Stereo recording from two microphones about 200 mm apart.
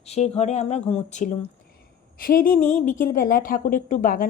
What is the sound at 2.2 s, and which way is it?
A woman's voice, 45° left (ahead or behind).